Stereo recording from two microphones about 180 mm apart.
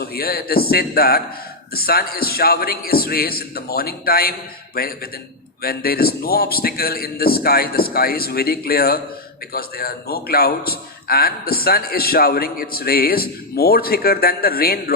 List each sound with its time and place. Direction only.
0.0 s a man's voice: 55° left (ahead or behind)